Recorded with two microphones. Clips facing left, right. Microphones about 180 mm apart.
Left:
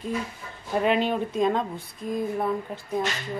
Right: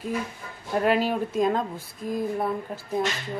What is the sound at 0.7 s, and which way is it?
Speech, 5° right (ahead or behind).